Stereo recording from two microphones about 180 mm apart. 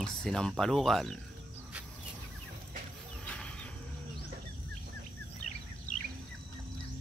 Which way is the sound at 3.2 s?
5° left (ahead or behind).